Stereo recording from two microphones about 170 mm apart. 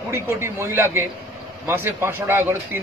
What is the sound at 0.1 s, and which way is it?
A man's voice, 15° right (ahead or behind).